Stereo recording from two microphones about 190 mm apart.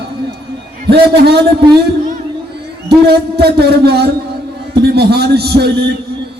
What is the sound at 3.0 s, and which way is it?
A man's voice, 60° right (ahead or behind).